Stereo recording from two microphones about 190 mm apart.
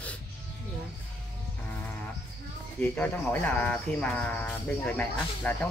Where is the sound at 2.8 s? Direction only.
10° left (ahead or behind).